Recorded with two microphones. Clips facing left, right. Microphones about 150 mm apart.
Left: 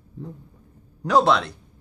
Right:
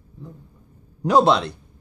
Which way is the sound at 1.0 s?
15° right (ahead or behind).